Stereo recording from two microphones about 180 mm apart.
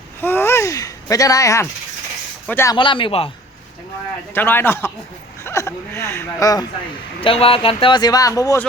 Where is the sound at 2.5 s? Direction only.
15° left (ahead or behind).